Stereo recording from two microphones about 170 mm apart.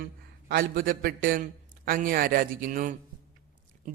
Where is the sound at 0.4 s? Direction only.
60° right (ahead or behind).